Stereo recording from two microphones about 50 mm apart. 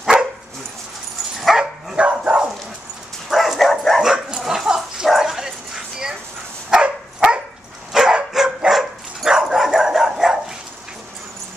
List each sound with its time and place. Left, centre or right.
0.0 s dog: centre
1.5 s dog: centre
2.0 s dog: right
3.3 s bow-wow: centre
3.5 s dog: centre
4.0 s bow-wow: centre
4.5 s dog: centre
6.7 s dog: centre